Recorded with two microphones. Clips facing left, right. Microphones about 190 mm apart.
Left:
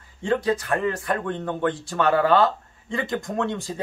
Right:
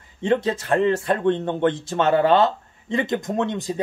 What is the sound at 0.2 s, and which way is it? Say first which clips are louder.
Speech: right 2 dB; 25° right (ahead or behind).